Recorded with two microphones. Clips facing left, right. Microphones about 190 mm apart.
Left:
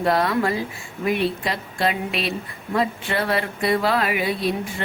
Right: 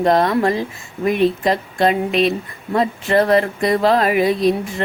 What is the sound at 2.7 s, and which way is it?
A woman's voice, 40° right (ahead or behind).